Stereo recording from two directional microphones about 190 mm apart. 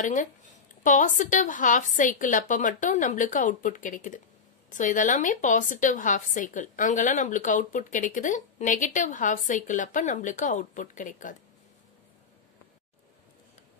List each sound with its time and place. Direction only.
0.0 s a woman's voice: 40° left (ahead or behind)